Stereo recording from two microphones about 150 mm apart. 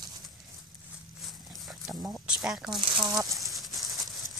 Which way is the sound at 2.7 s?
25° right (ahead or behind).